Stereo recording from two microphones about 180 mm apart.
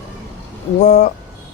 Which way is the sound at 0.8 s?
40° left (ahead or behind).